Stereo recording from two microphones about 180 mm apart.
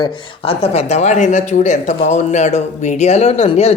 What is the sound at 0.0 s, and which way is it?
Speech, 30° left (ahead or behind).